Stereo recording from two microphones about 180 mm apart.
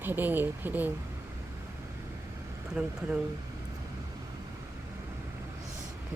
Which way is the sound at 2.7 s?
5° right (ahead or behind).